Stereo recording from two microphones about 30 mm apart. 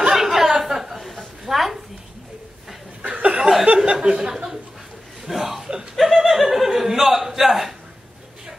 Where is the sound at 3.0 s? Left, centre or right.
Right.